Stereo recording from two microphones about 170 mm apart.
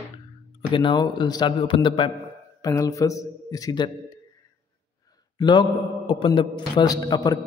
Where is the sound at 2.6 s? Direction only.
20° left (ahead or behind).